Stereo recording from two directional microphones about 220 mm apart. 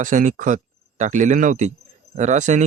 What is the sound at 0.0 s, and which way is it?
Speech, 35° right (ahead or behind).